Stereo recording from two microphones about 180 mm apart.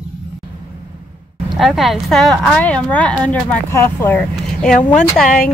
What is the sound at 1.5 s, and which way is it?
A woman's voice, centre (ahead or behind).